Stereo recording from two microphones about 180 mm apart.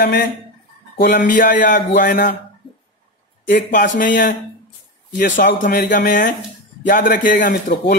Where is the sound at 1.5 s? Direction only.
70° left (ahead or behind).